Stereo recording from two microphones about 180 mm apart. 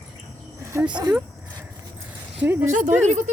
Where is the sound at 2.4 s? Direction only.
10° right (ahead or behind).